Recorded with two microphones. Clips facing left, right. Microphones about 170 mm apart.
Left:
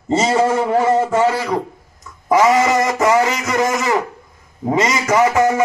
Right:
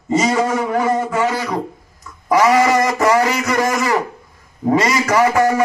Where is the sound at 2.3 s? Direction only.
25° left (ahead or behind).